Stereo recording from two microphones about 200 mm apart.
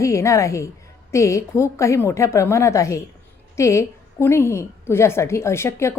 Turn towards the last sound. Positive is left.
turn(degrees=15)  # may be behind; listen again after turning